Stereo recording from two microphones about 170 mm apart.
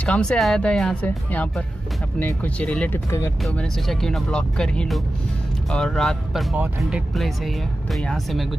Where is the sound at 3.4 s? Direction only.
Centre (ahead or behind).